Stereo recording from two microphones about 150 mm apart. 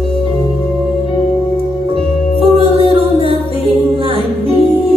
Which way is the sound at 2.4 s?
40° right (ahead or behind).